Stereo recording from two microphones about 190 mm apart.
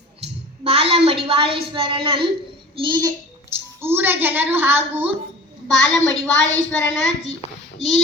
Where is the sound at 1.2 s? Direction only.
30° right (ahead or behind).